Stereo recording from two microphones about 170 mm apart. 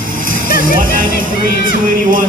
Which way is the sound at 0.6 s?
55° right (ahead or behind).